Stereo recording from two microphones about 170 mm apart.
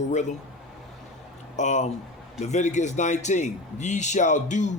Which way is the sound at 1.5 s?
45° left (ahead or behind).